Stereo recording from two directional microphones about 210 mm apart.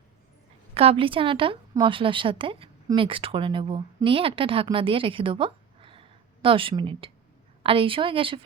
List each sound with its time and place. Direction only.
0.7 s a woman's voice: 30° right (ahead or behind)